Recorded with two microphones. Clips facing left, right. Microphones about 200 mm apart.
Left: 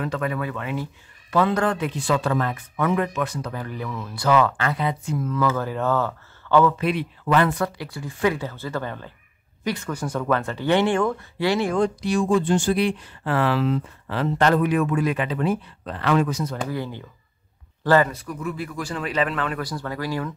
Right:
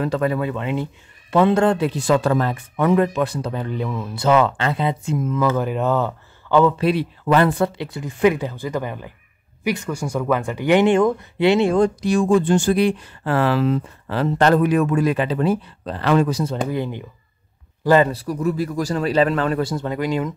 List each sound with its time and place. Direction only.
0.0 s speech: 35° right (ahead or behind); by 6.7 s 20° right (ahead or behind)
6.8 s speech: 35° right (ahead or behind)
11.8 s speech: 45° right (ahead or behind)
16.5 s speech: 20° right (ahead or behind)
18.1 s speech: 35° right (ahead or behind)